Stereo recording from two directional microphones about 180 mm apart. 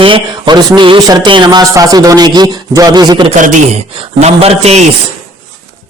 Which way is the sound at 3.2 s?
40° right (ahead or behind).